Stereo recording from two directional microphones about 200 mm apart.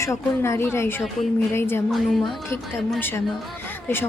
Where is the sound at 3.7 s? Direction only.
10° left (ahead or behind).